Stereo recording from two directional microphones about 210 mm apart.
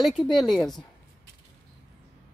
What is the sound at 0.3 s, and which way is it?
Speech, centre (ahead or behind).